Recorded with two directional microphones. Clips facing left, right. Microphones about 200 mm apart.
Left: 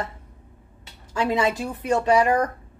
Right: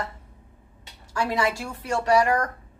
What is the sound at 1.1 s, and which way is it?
Speech, 20° left (ahead or behind).